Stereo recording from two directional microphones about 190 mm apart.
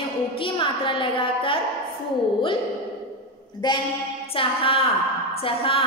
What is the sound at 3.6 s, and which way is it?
A woman's voice, 25° left (ahead or behind).